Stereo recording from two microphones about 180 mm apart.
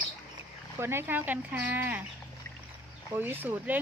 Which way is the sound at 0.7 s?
15° right (ahead or behind).